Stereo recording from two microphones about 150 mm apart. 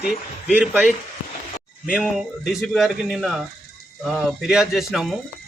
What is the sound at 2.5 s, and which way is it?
Speech, centre (ahead or behind).